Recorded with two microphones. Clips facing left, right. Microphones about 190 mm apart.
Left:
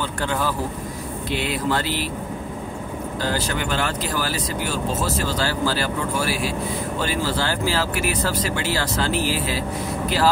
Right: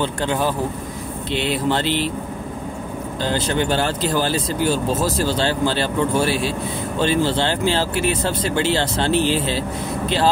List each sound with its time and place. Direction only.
0.0 s speech: 20° right (ahead or behind)
3.2 s speech: 25° right (ahead or behind)